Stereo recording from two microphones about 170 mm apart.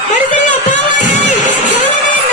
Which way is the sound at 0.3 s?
45° left (ahead or behind).